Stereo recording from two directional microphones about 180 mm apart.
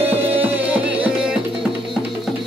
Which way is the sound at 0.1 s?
10° right (ahead or behind).